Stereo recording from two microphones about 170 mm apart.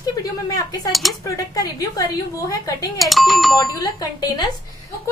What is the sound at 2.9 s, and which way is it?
Speech, centre (ahead or behind).